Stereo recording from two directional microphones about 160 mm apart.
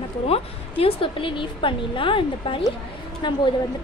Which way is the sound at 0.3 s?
35° left (ahead or behind).